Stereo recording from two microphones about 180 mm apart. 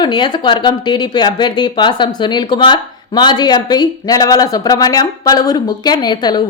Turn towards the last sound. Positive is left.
turn(degrees=25)  # may be behind; listen again after turning